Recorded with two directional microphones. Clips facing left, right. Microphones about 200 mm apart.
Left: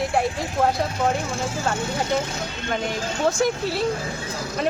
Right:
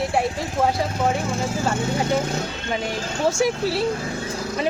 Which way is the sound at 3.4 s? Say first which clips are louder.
Right 1 dB; 5° right (ahead or behind).